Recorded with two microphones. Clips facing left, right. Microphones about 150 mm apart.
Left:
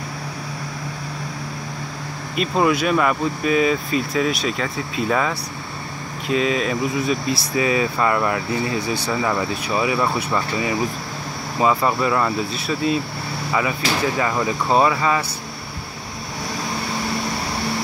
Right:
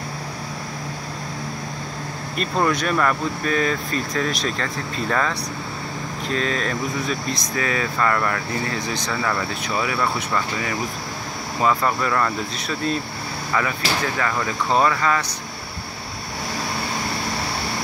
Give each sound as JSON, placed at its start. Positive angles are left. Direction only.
{"t": 2.3, "sound": "speech", "side_deg": 5}